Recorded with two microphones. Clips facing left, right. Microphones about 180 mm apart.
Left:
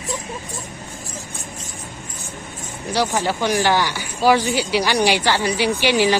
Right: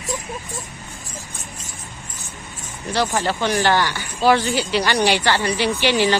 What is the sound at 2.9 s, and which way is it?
Speech, 10° left (ahead or behind).